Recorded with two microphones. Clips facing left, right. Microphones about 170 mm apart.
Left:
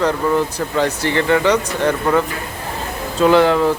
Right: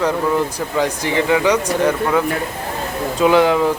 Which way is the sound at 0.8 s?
10° right (ahead or behind).